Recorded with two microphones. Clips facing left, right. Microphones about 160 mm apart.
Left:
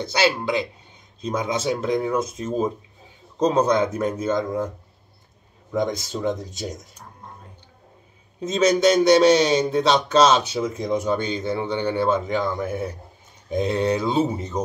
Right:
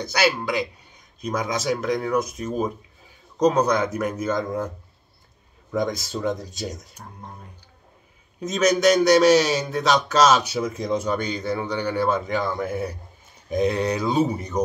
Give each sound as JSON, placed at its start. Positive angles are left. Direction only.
{"t": 0.0, "sound": "speech", "side_deg": 25}
{"t": 5.8, "sound": "speech", "side_deg": 20}
{"t": 8.4, "sound": "speech", "side_deg": 30}
{"t": 9.3, "sound": "speech", "side_deg": -5}
{"t": 9.6, "sound": "speech", "side_deg": 30}